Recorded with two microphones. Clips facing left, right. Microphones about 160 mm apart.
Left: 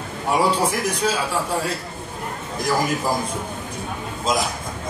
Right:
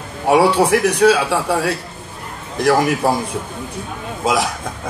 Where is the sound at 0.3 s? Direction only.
70° right (ahead or behind).